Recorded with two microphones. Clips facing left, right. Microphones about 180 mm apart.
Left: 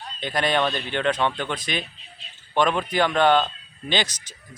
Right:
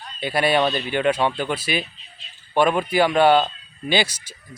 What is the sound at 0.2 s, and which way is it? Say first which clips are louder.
Speech: right 3 dB; 10° right (ahead or behind).